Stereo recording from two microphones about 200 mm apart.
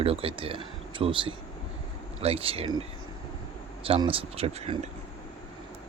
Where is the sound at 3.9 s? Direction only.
25° right (ahead or behind).